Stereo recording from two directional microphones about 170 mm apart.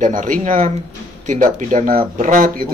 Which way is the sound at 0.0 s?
50° right (ahead or behind).